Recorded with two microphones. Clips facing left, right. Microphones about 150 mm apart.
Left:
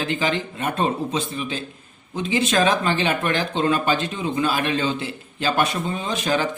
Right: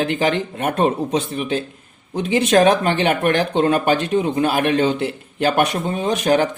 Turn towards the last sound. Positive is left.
turn(degrees=-60)  # may be behind; listen again after turning